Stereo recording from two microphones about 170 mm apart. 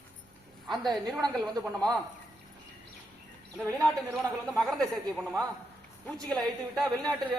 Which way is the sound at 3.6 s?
10° left (ahead or behind).